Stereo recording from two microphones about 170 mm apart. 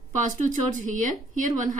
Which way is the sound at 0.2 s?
50° right (ahead or behind).